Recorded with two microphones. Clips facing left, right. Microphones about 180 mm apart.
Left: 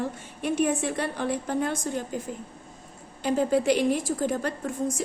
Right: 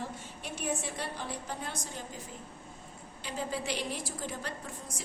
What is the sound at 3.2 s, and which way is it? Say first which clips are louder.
Speech: left 13 dB; 50° left (ahead or behind).